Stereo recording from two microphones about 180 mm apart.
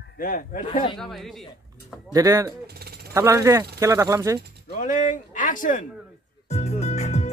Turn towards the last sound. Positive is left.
turn(degrees=40)  # may be behind; listen again after turning